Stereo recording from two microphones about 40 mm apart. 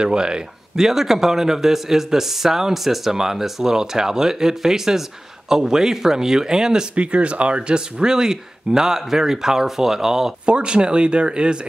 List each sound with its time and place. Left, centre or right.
0.0 s speech: right
0.7 s speech: centre
7.0 s speech: right; by 10.3 s centre
10.4 s speech: right